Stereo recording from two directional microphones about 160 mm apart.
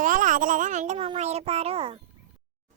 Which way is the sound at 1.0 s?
40° right (ahead or behind).